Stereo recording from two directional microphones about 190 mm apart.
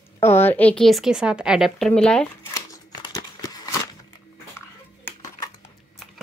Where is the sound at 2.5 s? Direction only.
20° left (ahead or behind).